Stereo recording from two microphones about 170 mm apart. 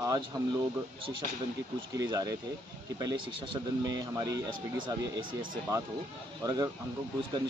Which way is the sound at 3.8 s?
25° right (ahead or behind).